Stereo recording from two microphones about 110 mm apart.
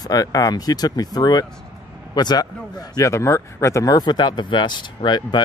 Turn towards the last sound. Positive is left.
turn(degrees=40)  # may be behind; listen again after turning